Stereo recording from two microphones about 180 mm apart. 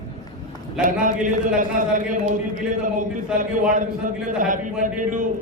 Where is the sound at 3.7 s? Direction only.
45° right (ahead or behind).